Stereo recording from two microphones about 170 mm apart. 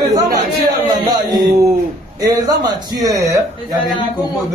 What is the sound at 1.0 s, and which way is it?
A man's voice, 25° right (ahead or behind).